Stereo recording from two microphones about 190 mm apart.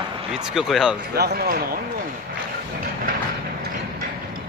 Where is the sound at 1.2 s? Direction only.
55° right (ahead or behind).